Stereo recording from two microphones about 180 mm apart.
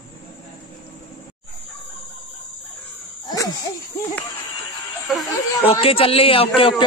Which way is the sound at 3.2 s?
25° left (ahead or behind).